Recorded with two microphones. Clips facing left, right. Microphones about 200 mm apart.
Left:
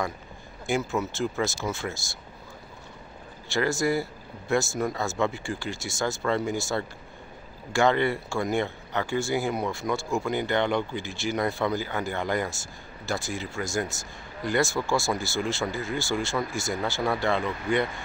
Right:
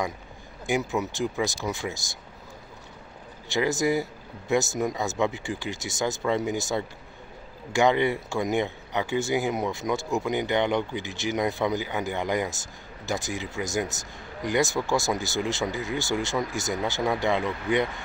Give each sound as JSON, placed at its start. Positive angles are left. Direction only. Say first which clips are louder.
{"t": 0.7, "sound": "speech", "louder": "right 1 dB", "side_deg": -15}
{"t": 3.4, "sound": "speech", "louder": "right 1 dB", "side_deg": -20}